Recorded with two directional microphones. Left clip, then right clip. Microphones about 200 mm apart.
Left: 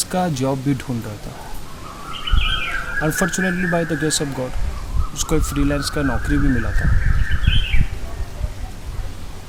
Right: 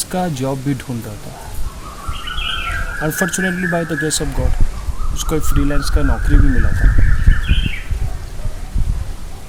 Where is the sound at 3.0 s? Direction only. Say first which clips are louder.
Right 2 dB; centre (ahead or behind).